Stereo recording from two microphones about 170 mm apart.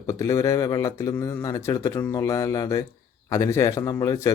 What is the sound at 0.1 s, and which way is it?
A man's voice, 20° left (ahead or behind).